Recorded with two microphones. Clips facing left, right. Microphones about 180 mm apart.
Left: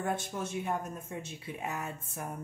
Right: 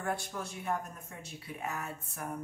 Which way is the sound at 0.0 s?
20° left (ahead or behind).